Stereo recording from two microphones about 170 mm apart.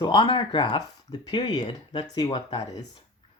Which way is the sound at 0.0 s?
30° left (ahead or behind).